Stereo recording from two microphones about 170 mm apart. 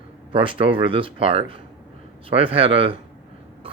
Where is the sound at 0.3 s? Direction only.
30° right (ahead or behind).